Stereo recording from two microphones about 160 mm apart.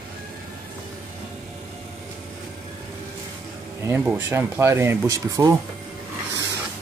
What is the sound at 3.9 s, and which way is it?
Speech, 10° right (ahead or behind).